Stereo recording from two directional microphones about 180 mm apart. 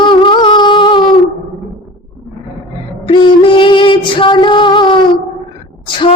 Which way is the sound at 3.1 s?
25° left (ahead or behind).